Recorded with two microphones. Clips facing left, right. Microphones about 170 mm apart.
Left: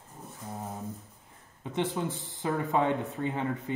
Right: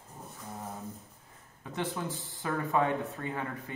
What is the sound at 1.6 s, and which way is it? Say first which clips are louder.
Speech: left 4 dB; 20° left (ahead or behind).